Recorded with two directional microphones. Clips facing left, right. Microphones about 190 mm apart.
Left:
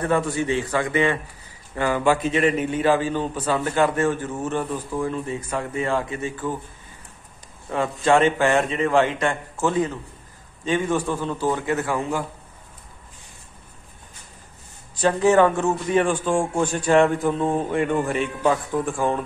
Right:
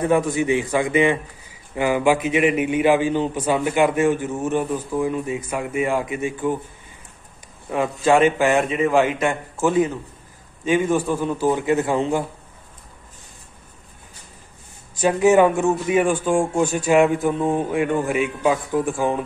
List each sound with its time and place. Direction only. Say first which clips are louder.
0.0 s a man's voice: right 3 dB; 15° right (ahead or behind)
7.9 s a man's voice: right 2 dB; 10° right (ahead or behind)
15.0 s a man's voice: right 2 dB; 10° right (ahead or behind)